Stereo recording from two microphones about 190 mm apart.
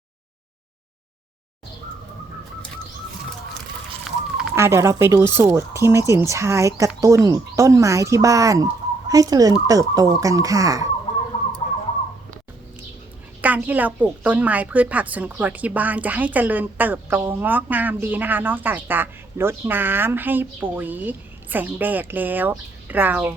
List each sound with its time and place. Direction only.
4.5 s a woman's voice: 15° right (ahead or behind)
11.6 s bird: 45° left (ahead or behind)
13.4 s a woman's voice: 10° right (ahead or behind)